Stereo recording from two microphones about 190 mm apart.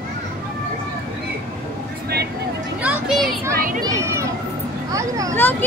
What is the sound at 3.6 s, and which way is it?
Speech, 50° right (ahead or behind).